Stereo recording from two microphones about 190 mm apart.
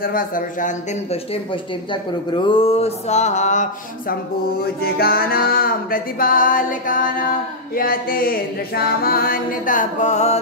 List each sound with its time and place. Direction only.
0.0 s speech: 50° left (ahead or behind)
4.8 s music: 50° left (ahead or behind)